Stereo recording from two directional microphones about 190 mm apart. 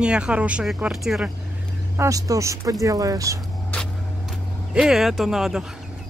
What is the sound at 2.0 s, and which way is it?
Speech, 20° right (ahead or behind).